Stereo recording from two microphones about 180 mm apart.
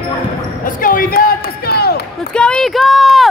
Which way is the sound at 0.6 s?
50° left (ahead or behind).